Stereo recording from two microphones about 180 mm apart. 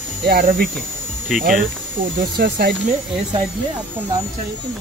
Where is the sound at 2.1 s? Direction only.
65° right (ahead or behind).